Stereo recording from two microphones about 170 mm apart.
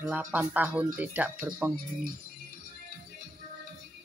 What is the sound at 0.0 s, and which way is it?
Speech, 10° right (ahead or behind).